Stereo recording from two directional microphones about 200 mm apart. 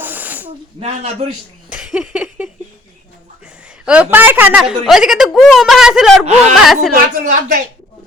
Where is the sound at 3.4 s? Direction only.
5° right (ahead or behind).